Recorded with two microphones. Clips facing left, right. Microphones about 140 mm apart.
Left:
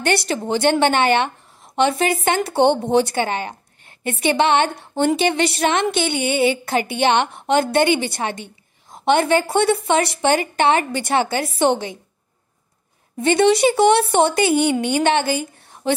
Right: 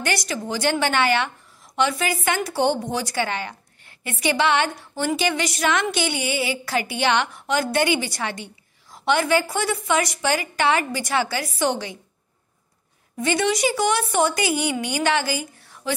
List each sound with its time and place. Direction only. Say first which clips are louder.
0.0 s a woman's voice: left 5 dB; 30° left (ahead or behind)
13.2 s a woman's voice: left 7 dB; 30° left (ahead or behind)